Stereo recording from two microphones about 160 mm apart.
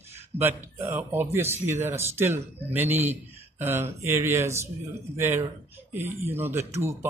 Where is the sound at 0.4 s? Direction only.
15° right (ahead or behind).